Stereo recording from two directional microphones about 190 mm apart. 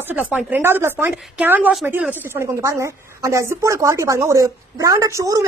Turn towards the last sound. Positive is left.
turn(degrees=-15)  # may be behind; listen again after turning